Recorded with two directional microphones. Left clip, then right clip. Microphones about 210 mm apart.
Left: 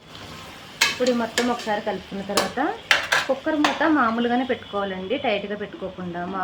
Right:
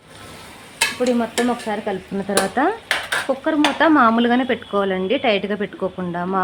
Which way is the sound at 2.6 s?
50° right (ahead or behind).